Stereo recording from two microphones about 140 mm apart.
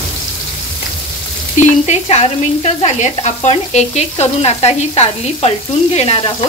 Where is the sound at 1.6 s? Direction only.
55° left (ahead or behind).